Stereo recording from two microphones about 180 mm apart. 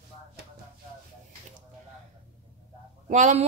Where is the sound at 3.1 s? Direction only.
40° right (ahead or behind).